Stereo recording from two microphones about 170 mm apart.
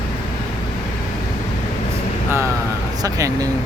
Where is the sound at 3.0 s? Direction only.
20° right (ahead or behind).